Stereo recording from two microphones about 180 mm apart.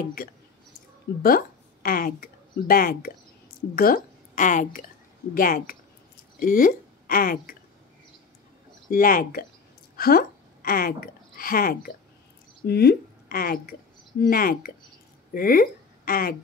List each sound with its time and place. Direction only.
0.2 s speech: 55° left (ahead or behind)
8.9 s speech: 50° left (ahead or behind)